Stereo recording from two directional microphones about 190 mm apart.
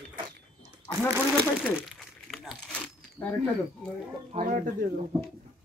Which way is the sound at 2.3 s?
Centre (ahead or behind).